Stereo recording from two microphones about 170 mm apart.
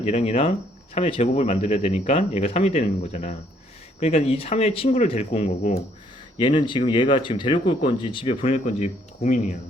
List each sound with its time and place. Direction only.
0.0 s speech: 40° left (ahead or behind)
6.3 s speech: 30° left (ahead or behind); by 9.4 s 45° left (ahead or behind)